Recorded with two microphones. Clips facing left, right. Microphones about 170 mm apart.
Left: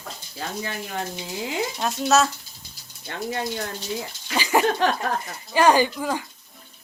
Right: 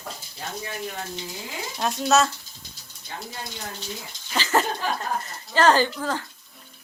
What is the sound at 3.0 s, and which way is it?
Speech, 70° left (ahead or behind).